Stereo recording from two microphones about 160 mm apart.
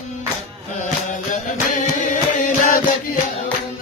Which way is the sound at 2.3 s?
50° left (ahead or behind).